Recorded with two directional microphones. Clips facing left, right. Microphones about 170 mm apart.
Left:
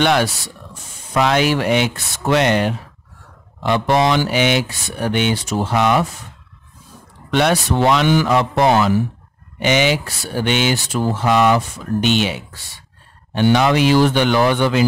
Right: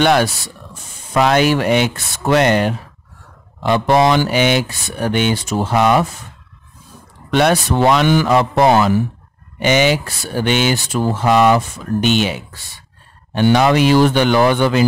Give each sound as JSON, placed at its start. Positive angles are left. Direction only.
{"t": 0.0, "sound": "speech", "side_deg": -45}
{"t": 7.2, "sound": "speech", "side_deg": -45}